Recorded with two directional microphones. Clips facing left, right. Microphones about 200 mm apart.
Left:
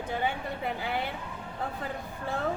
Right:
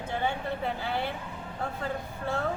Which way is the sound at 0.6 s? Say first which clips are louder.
Left 2 dB; 15° left (ahead or behind).